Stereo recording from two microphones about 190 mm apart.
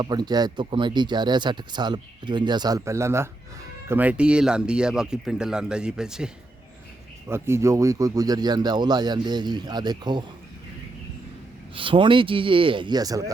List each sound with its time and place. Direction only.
0.0 s speech: 20° right (ahead or behind)
11.7 s speech: 25° right (ahead or behind)